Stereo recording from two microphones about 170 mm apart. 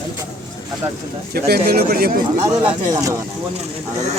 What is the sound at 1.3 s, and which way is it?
Speech, 65° right (ahead or behind).